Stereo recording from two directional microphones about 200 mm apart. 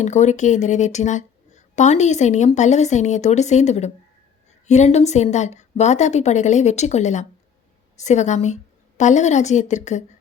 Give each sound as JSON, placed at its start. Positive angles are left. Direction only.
{"t": 0.0, "sound": "speech", "side_deg": 35}